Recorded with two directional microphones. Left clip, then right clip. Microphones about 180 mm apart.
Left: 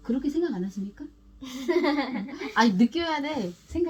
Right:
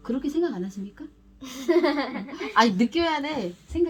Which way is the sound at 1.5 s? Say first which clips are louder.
Right 4 dB; 40° right (ahead or behind).